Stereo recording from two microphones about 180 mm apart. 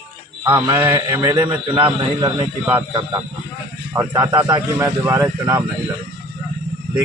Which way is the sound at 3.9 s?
15° right (ahead or behind).